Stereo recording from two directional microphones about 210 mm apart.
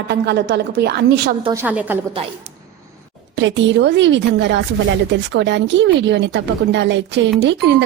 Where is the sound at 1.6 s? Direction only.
5° right (ahead or behind).